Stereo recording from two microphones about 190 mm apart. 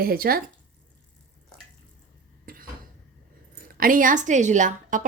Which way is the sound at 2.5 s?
50° right (ahead or behind).